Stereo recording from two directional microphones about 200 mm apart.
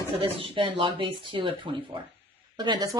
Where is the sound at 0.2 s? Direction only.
25° right (ahead or behind).